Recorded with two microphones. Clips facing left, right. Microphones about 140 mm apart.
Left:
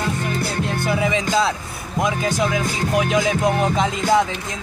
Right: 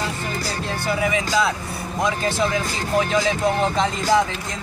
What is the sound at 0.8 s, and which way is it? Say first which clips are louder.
Music: left 1 dB; 20° left (ahead or behind).